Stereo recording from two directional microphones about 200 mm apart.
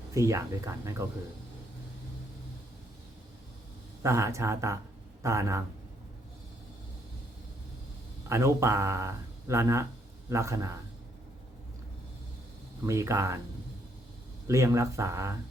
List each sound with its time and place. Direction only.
0.1 s speech: 15° right (ahead or behind)
4.0 s speech: 15° right (ahead or behind)
8.3 s speech: 15° right (ahead or behind)
12.8 s speech: 15° right (ahead or behind)
14.4 s speech: 15° right (ahead or behind)